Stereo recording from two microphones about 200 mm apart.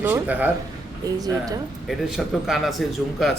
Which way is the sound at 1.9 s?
Centre (ahead or behind).